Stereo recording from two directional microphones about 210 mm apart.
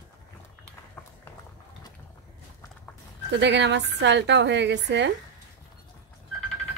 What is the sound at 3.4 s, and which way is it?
Speech, 55° right (ahead or behind).